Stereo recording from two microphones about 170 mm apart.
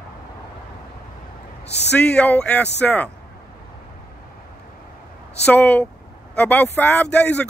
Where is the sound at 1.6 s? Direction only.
85° left.